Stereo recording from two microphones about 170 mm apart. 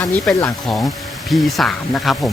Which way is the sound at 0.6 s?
Centre (ahead or behind).